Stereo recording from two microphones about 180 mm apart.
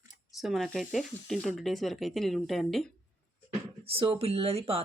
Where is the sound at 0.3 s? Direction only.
Centre (ahead or behind).